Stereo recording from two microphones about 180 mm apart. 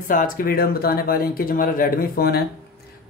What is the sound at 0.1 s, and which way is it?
Speech, 50° left (ahead or behind).